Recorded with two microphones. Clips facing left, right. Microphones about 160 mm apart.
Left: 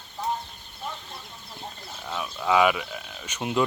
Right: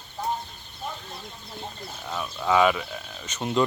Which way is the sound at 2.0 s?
Centre (ahead or behind).